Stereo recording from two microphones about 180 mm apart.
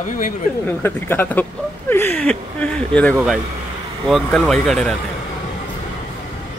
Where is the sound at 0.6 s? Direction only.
10° left (ahead or behind).